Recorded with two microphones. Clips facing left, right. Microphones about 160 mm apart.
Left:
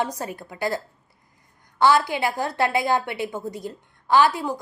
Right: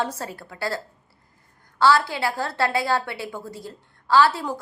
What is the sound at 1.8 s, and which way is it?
A woman's voice, 20° left (ahead or behind).